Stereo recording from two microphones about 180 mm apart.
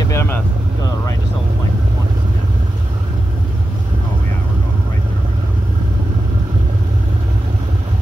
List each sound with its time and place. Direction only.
0.0 s vehicle: 15° left (ahead or behind)